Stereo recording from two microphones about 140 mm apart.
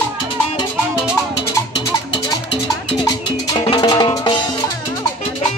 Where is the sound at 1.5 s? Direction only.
25° left (ahead or behind).